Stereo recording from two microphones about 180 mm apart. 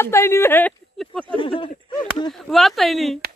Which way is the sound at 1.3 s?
30° left (ahead or behind).